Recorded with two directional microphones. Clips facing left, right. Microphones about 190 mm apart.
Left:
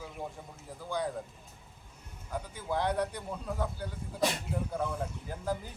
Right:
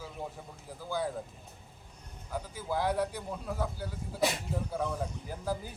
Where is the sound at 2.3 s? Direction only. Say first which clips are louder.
Even; 5° right (ahead or behind).